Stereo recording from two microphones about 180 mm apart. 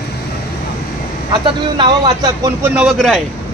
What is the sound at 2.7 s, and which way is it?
Speech, 5° right (ahead or behind).